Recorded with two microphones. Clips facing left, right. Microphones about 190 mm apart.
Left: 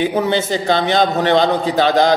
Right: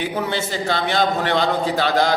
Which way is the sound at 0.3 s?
20° left (ahead or behind).